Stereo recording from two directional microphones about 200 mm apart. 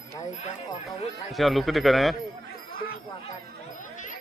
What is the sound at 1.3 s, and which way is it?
Speech, centre (ahead or behind).